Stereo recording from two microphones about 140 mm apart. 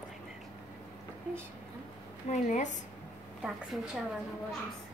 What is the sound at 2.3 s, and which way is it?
Speech, 60° left (ahead or behind).